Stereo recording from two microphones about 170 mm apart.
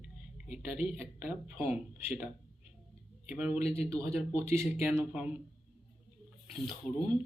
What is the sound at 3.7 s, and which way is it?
Speech, 35° left (ahead or behind).